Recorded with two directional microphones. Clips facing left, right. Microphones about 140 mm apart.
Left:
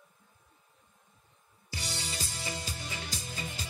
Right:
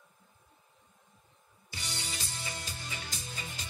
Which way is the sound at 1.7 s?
35° left (ahead or behind).